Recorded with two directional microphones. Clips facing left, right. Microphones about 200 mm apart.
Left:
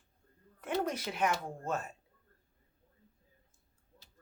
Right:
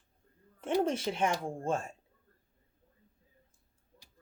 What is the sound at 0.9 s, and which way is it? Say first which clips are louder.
Speech: right 3 dB; 30° right (ahead or behind).